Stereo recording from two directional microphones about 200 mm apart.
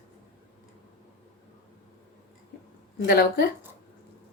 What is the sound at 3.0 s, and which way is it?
Speech, 50° left (ahead or behind).